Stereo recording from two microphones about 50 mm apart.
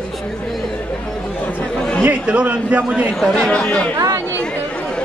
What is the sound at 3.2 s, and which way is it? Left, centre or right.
Speech, centre.